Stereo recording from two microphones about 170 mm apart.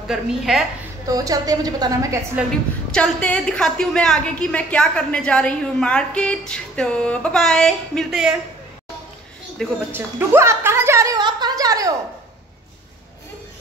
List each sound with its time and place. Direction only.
0.0 s a woman's voice: 5° right (ahead or behind)
1.0 s a woman's voice: 20° right (ahead or behind)
2.4 s a woman's voice: 10° right (ahead or behind)
2.9 s a woman's voice: 5° left (ahead or behind)
9.6 s a woman's voice: 5° left (ahead or behind)
9.9 s a sound: 15° right (ahead or behind)